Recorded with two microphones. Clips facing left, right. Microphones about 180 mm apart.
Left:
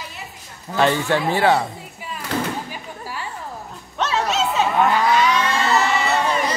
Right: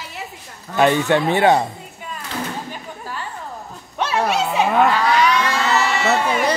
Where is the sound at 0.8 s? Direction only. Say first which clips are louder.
Right 3 dB; 20° right (ahead or behind).